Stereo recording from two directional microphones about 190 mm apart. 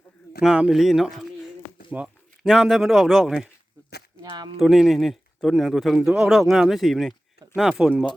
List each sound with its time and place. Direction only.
0.4 s speech: 5° right (ahead or behind)
4.2 s speech: 20° right (ahead or behind)
4.5 s speech: centre (ahead or behind)